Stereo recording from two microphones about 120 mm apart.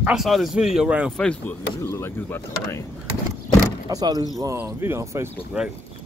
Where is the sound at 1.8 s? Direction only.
20° left (ahead or behind).